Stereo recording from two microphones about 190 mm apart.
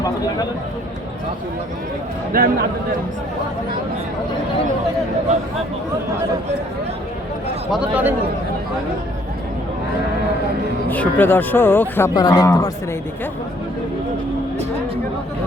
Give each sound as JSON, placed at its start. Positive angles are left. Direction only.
{"t": 2.3, "sound": "a man's voice", "side_deg": -50}
{"t": 7.7, "sound": "a man's voice", "side_deg": -5}
{"t": 10.8, "sound": "speech", "side_deg": 10}